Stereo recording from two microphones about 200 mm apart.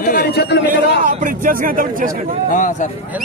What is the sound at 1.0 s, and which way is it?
Speech, 40° right (ahead or behind).